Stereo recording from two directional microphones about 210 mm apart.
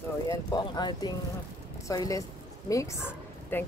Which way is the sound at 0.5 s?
20° left (ahead or behind).